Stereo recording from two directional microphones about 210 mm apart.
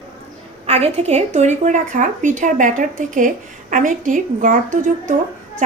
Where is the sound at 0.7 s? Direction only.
30° right (ahead or behind).